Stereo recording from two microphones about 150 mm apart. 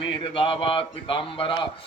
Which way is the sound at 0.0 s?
35° left (ahead or behind).